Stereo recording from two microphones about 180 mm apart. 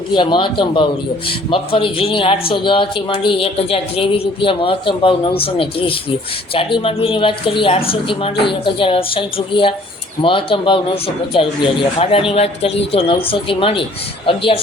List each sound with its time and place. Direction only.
0.1 s speech: 25° left (ahead or behind)